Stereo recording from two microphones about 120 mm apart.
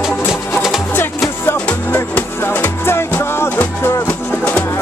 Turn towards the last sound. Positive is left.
turn(degrees=20)  # may be behind; listen again after turning